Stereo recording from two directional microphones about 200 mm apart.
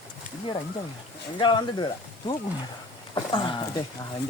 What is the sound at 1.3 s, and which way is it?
Speech, 20° left (ahead or behind).